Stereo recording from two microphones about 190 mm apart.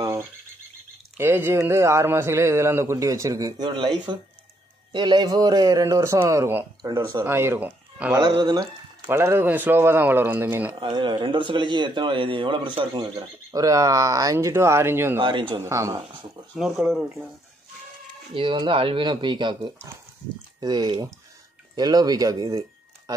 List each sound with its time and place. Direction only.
0.0 s frog: 15° right (ahead or behind)
1.1 s speech: 10° right (ahead or behind)
8.2 s speech: 20° right (ahead or behind)
10.8 s speech: 25° right (ahead or behind)
15.1 s speech: 25° right (ahead or behind)
16.5 s speech: centre (ahead or behind)
18.3 s speech: 25° right (ahead or behind)